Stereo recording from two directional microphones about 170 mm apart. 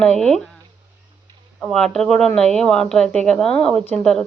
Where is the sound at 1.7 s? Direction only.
5° left (ahead or behind).